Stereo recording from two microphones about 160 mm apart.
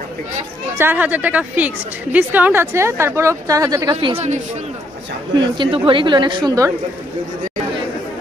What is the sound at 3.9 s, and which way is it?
Speech, 40° right (ahead or behind).